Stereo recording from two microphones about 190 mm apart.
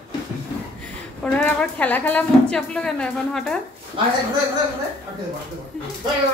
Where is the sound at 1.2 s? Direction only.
5° left (ahead or behind).